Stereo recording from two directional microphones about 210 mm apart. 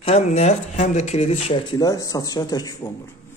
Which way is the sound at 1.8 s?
15° left (ahead or behind).